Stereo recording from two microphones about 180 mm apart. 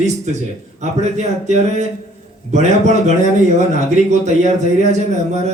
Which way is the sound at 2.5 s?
40° right (ahead or behind).